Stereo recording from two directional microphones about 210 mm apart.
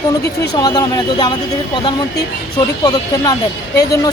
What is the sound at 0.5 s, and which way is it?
Speech, 20° left (ahead or behind).